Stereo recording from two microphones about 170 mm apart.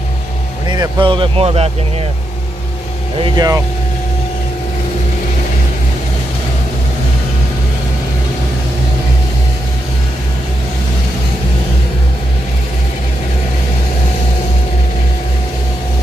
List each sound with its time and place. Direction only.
0.7 s speech: 30° right (ahead or behind)
3.2 s speech: 20° right (ahead or behind)